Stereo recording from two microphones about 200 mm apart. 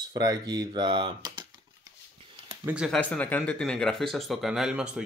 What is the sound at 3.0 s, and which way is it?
Speech, 5° left (ahead or behind).